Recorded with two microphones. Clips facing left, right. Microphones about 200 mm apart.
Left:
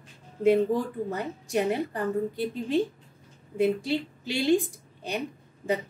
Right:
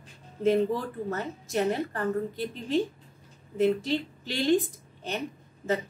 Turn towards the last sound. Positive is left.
turn(degrees=15)  # may be behind; listen again after turning